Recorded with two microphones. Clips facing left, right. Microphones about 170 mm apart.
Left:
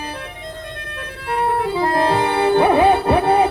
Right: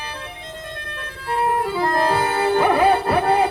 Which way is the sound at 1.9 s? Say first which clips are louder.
Left 3 dB; 25° left (ahead or behind).